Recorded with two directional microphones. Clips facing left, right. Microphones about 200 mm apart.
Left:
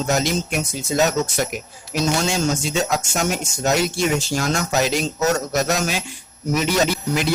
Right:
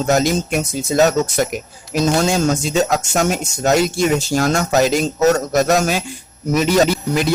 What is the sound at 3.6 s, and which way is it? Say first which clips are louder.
Music: right 4 dB; 40° right (ahead or behind).